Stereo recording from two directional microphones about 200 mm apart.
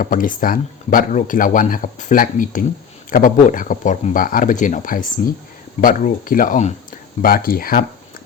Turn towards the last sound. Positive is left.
turn(degrees=45)  # may be behind; listen again after turning